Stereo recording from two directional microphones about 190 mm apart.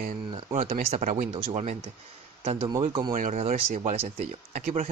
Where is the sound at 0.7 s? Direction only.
45° right (ahead or behind).